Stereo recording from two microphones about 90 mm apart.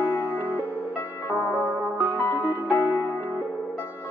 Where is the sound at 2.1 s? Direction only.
20° left (ahead or behind).